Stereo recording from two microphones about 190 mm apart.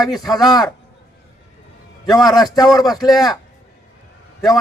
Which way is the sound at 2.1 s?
20° left (ahead or behind).